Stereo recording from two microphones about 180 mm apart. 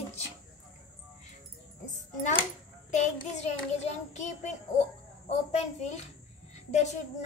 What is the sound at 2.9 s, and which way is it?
A child's voice, 40° left (ahead or behind).